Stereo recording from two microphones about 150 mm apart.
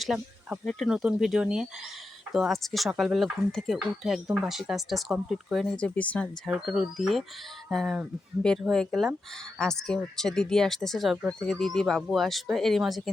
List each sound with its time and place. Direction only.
0.0 s speech: centre (ahead or behind)
6.5 s speech: 5° right (ahead or behind)